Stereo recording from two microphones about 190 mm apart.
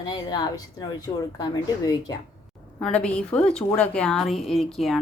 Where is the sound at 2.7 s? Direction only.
5° left (ahead or behind).